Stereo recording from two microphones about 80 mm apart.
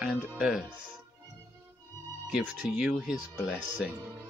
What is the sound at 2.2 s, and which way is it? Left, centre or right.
Speech, centre.